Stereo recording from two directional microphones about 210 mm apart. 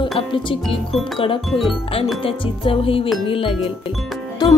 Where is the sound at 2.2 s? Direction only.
25° left (ahead or behind).